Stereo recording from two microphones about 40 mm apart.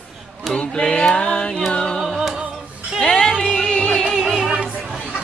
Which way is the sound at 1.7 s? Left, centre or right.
Left.